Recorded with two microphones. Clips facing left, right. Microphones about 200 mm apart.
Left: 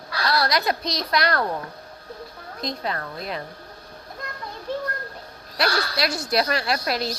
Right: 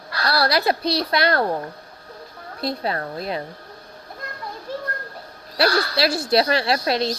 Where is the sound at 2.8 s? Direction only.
30° right (ahead or behind).